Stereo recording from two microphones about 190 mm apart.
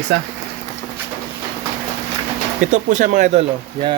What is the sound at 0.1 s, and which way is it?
Speech, 60° right (ahead or behind).